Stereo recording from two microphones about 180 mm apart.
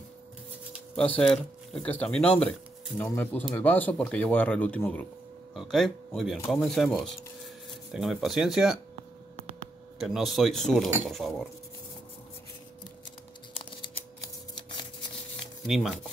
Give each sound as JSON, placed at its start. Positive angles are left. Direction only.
{"t": 0.9, "sound": "speech", "side_deg": 5}
{"t": 9.9, "sound": "speech", "side_deg": 0}
{"t": 13.5, "sound": "scissors", "side_deg": 30}
{"t": 15.6, "sound": "speech", "side_deg": 0}